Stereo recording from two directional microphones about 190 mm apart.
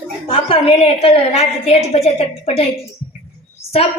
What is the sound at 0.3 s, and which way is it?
A woman's voice, 30° left (ahead or behind).